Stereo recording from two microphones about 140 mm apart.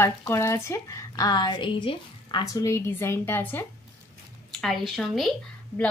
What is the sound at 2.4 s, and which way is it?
A woman's voice, 25° left (ahead or behind).